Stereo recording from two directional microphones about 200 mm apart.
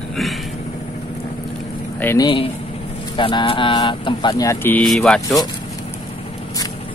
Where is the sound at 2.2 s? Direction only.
25° left (ahead or behind); by 5.4 s centre (ahead or behind).